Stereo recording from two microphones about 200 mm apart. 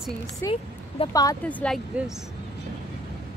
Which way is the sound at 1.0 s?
30° left (ahead or behind).